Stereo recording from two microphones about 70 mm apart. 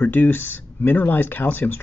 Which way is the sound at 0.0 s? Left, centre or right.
Left.